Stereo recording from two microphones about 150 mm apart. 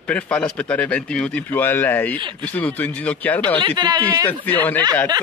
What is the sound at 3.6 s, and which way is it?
Speech, 30° right (ahead or behind).